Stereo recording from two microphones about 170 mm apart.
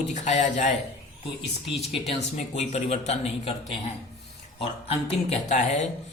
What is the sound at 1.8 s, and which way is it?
Speech, 40° left (ahead or behind).